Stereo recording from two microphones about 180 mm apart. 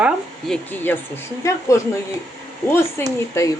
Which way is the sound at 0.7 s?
10° left (ahead or behind).